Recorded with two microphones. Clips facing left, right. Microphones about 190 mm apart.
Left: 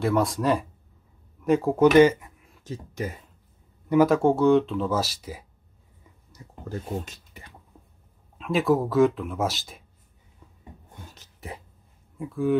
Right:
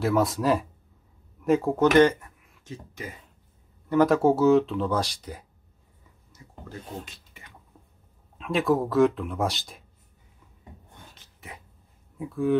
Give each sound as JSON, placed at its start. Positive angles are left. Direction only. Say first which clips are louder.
{"t": 0.0, "sound": "speech", "louder": "even", "side_deg": 0}
{"t": 2.6, "sound": "speech", "louder": "left 7 dB", "side_deg": 40}
{"t": 3.9, "sound": "speech", "louder": "left 1 dB", "side_deg": 0}
{"t": 6.3, "sound": "a sound", "louder": "left 6 dB", "side_deg": 40}
{"t": 8.4, "sound": "speech", "louder": "left 1 dB", "side_deg": 0}
{"t": 11.1, "sound": "cough", "louder": "left 7 dB", "side_deg": 35}
{"t": 12.2, "sound": "speech", "louder": "even", "side_deg": 0}